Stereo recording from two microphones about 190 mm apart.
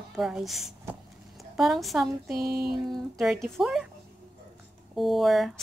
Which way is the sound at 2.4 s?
55° right (ahead or behind).